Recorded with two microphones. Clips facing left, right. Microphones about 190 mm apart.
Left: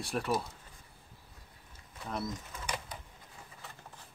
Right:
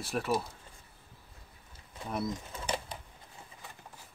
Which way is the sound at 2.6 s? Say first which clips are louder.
Right 4 dB; 30° right (ahead or behind).